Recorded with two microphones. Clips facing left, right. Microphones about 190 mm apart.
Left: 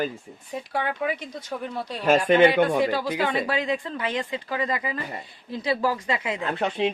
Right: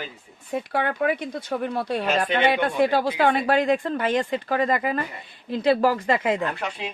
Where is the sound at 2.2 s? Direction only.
45° left (ahead or behind).